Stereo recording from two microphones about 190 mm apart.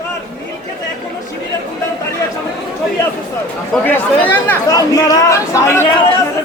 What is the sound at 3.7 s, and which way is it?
Speech, 10° left (ahead or behind).